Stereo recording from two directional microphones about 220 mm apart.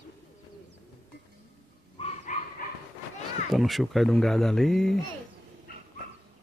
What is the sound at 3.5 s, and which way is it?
Speech, centre (ahead or behind).